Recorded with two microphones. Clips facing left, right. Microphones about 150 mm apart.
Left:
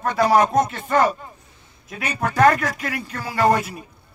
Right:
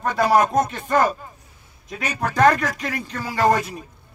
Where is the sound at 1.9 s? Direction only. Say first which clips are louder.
Even; 5° left (ahead or behind).